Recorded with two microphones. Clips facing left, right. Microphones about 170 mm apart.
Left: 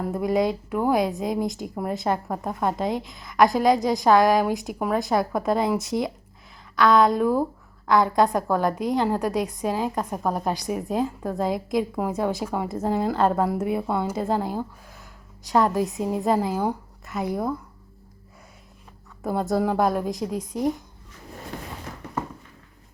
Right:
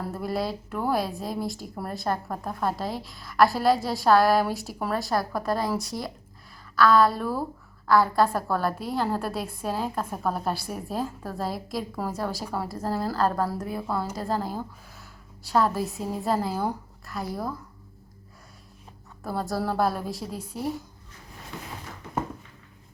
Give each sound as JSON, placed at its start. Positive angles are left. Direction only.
{"t": 0.0, "sound": "a woman's voice", "side_deg": 15}
{"t": 19.2, "sound": "speech", "side_deg": 20}